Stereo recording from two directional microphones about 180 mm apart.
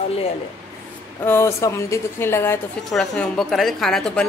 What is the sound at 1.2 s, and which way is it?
A woman's voice, 15° left (ahead or behind).